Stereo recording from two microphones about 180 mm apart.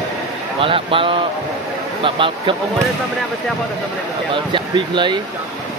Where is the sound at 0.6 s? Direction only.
30° right (ahead or behind).